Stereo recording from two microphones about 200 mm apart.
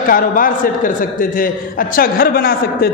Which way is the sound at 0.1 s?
45° left (ahead or behind).